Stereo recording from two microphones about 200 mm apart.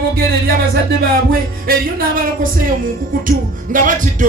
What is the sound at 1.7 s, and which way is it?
Speech, 45° right (ahead or behind).